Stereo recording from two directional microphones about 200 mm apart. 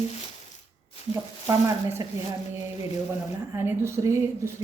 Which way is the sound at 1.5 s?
20° right (ahead or behind).